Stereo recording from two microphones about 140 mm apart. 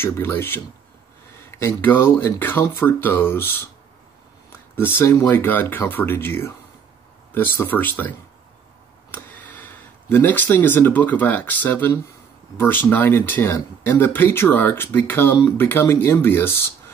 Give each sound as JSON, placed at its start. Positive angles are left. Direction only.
{"t": 0.0, "sound": "speech", "side_deg": 15}
{"t": 9.1, "sound": "speech", "side_deg": 15}